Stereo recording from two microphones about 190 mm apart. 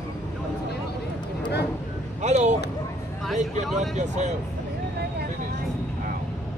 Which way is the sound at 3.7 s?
40° right (ahead or behind).